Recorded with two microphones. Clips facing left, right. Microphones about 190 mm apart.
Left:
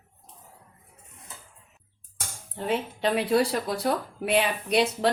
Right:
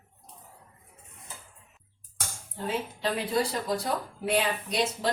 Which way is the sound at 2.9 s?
65° left (ahead or behind).